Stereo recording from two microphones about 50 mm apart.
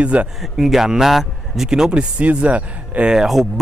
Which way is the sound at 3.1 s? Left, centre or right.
Centre.